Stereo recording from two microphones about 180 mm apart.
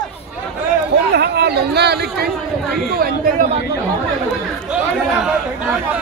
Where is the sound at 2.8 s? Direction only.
60° right (ahead or behind).